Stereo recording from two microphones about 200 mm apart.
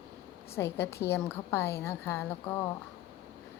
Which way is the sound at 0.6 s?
10° left (ahead or behind).